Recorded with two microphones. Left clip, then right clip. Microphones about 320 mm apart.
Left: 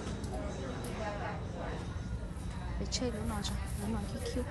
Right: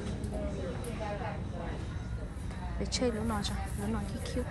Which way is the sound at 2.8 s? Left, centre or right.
Centre.